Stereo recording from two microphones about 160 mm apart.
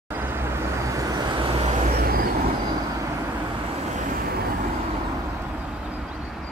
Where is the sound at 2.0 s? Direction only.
65° right (ahead or behind).